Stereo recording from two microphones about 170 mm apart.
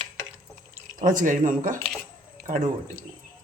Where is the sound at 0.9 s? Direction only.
55° right (ahead or behind).